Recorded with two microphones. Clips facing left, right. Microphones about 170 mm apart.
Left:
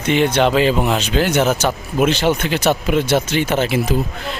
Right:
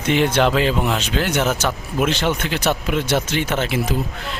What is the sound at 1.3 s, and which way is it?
Speech, 30° left (ahead or behind).